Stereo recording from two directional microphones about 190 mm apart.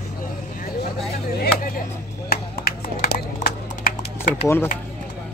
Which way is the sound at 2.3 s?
55° left (ahead or behind).